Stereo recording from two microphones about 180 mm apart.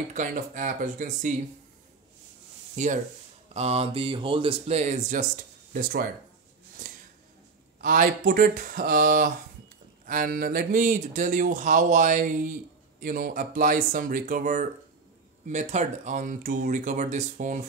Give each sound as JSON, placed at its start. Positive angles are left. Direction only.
{"t": 0.1, "sound": "speech", "side_deg": -45}
{"t": 2.7, "sound": "speech", "side_deg": -40}
{"t": 6.8, "sound": "a sound", "side_deg": -50}
{"t": 7.8, "sound": "speech", "side_deg": -50}